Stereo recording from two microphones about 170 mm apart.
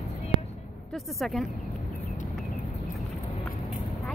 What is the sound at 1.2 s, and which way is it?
Speech, centre (ahead or behind).